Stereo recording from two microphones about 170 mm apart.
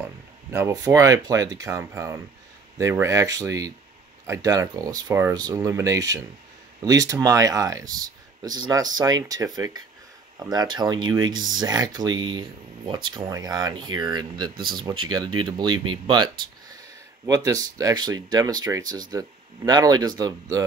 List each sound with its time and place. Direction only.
0.5 s speech: 15° right (ahead or behind)
17.3 s speech: 20° right (ahead or behind)